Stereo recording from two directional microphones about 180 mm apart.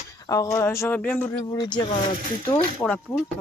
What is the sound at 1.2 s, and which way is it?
Speech, 20° left (ahead or behind).